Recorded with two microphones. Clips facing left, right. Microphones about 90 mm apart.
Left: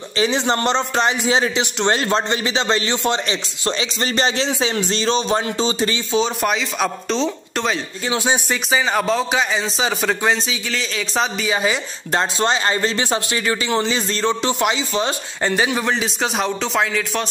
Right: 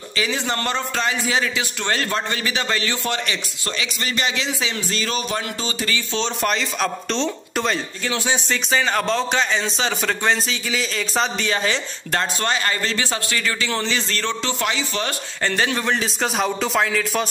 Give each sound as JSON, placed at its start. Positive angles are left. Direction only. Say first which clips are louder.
{"t": 0.2, "sound": "a man's voice", "louder": "left 5 dB", "side_deg": 25}
{"t": 6.1, "sound": "speech", "louder": "left 4 dB", "side_deg": 5}
{"t": 8.0, "sound": "a man's voice", "louder": "left 3 dB", "side_deg": 20}
{"t": 8.6, "sound": "a man's voice", "louder": "left 2 dB", "side_deg": 5}